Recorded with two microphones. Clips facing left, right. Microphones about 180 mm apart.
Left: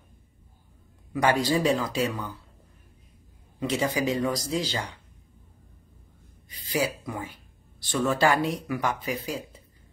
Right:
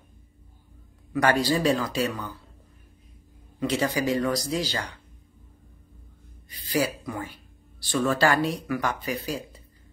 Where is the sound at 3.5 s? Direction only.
20° left (ahead or behind).